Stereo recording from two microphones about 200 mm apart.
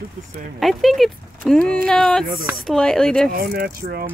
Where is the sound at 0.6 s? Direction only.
Centre (ahead or behind).